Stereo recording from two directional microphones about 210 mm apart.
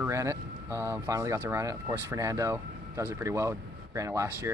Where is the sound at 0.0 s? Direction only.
15° right (ahead or behind).